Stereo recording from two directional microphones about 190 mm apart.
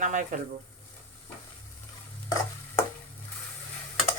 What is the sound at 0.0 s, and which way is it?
Speech, 40° right (ahead or behind).